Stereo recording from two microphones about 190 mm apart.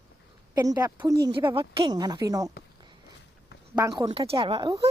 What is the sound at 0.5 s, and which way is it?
A woman's voice, 20° right (ahead or behind).